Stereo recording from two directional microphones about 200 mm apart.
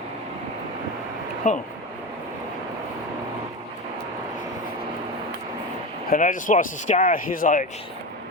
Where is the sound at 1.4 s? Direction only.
40° left (ahead or behind).